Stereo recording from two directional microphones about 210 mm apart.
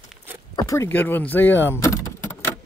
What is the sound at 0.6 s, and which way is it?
Speech, 15° left (ahead or behind).